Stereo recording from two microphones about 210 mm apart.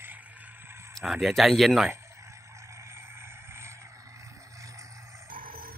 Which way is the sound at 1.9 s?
15° right (ahead or behind).